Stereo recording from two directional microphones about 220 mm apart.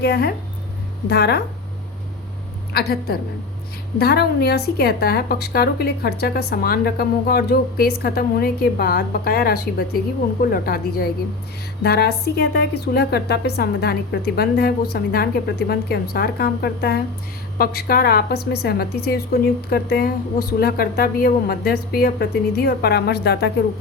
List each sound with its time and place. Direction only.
0.0 s a woman's voice: 45° left (ahead or behind)
2.7 s a woman's voice: 45° left (ahead or behind)